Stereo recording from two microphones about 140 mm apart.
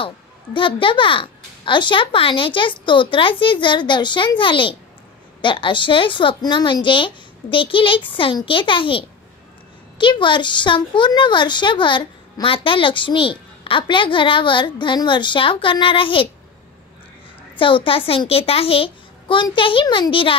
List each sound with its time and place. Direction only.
0.0 s a woman's voice: 40° left (ahead or behind)
17.6 s a woman's voice: 40° left (ahead or behind)